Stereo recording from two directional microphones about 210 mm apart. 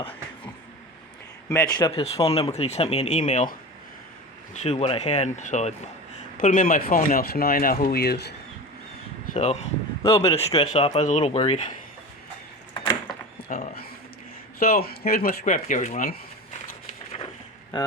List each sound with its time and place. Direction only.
1.5 s speech: 15° left (ahead or behind); by 3.5 s 35° left (ahead or behind)
4.5 s speech: 30° left (ahead or behind); by 8.4 s 50° left (ahead or behind)
9.3 s speech: 35° left (ahead or behind)
10.0 s speech: 15° left (ahead or behind)
10.3 s speech: 30° left (ahead or behind)
12.8 s a sound: 20° left (ahead or behind)
13.5 s speech: 40° left (ahead or behind)